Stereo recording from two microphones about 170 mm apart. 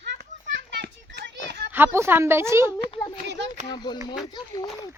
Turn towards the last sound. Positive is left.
turn(degrees=25)  # may be behind; listen again after turning